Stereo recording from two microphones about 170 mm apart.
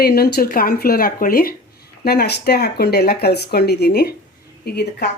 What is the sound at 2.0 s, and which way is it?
Speech, 75° left (ahead or behind).